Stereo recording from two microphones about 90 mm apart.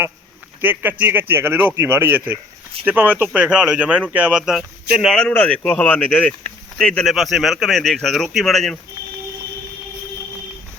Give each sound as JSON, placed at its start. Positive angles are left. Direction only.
{"t": 0.6, "sound": "a man's voice", "side_deg": -20}
{"t": 5.1, "sound": "a man's voice", "side_deg": 10}